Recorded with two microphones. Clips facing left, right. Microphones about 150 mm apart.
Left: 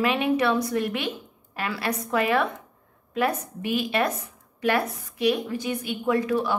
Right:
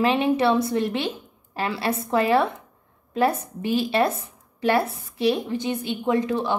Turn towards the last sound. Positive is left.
turn(degrees=-25)  # may be behind; listen again after turning